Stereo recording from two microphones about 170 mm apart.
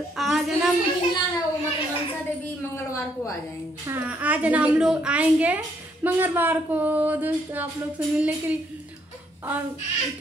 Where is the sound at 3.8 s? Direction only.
10° right (ahead or behind).